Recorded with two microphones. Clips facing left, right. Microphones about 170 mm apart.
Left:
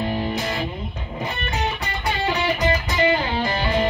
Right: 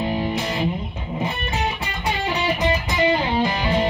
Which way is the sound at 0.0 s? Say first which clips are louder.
Right 1 dB; 15° right (ahead or behind).